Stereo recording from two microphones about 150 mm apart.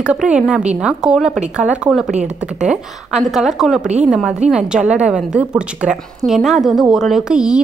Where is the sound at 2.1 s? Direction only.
50° right (ahead or behind).